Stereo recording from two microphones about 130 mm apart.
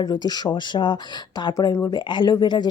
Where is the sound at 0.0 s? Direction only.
30° left (ahead or behind).